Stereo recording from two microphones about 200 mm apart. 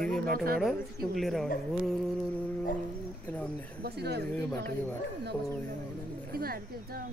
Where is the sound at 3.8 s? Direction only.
55° right (ahead or behind).